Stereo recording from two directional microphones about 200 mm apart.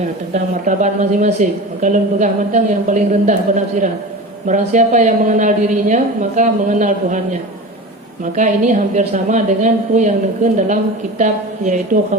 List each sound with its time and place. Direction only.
0.6 s a woman's voice: 40° right (ahead or behind)
8.2 s a woman's voice: 40° right (ahead or behind)